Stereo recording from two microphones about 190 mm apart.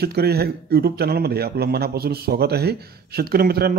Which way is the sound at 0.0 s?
55° right (ahead or behind).